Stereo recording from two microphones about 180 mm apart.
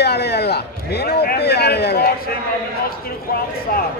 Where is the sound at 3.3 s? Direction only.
55° left (ahead or behind).